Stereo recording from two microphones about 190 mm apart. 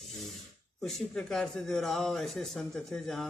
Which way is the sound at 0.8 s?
Centre (ahead or behind).